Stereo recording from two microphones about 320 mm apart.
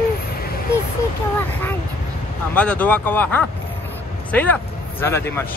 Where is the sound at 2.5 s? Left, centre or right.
Centre.